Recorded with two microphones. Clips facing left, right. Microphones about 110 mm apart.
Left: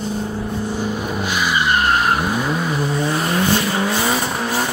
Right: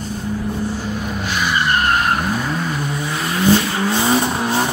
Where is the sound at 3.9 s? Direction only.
20° right (ahead or behind).